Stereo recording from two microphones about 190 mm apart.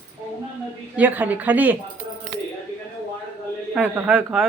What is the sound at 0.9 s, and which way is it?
Speech, 10° right (ahead or behind).